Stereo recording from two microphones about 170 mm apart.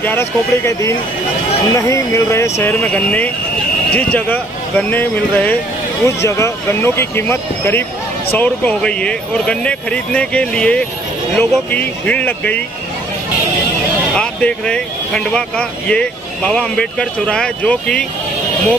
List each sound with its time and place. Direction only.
0.0 s speech: 15° left (ahead or behind)
14.1 s speech: 5° left (ahead or behind)